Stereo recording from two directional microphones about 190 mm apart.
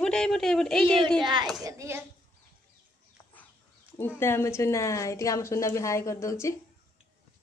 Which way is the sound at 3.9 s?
10° left (ahead or behind).